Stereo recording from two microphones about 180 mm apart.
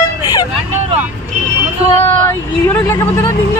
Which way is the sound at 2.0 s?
10° left (ahead or behind).